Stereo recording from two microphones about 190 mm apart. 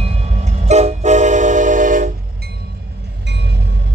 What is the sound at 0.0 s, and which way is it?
Train, 35° right (ahead or behind).